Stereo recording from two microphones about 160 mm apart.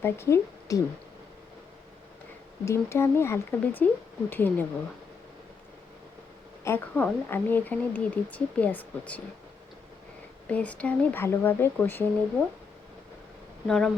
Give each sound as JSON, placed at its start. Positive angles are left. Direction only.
{"t": 0.0, "sound": "a woman's voice", "side_deg": 15}
{"t": 2.6, "sound": "a woman's voice", "side_deg": 15}
{"t": 6.7, "sound": "a woman's voice", "side_deg": 10}
{"t": 10.4, "sound": "a woman's voice", "side_deg": 10}
{"t": 13.7, "sound": "speech", "side_deg": 5}